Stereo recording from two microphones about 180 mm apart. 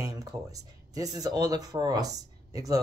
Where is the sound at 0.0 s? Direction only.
20° right (ahead or behind).